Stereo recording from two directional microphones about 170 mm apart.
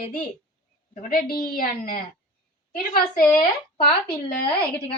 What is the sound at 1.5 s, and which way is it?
A woman's voice, 55° left (ahead or behind).